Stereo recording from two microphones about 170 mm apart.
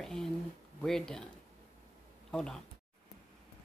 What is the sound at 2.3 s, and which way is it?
Speech, 5° left (ahead or behind).